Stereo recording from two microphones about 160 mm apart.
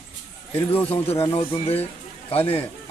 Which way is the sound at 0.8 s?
40° left (ahead or behind).